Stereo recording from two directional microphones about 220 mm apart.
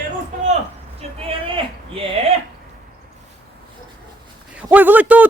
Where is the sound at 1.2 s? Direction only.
25° right (ahead or behind).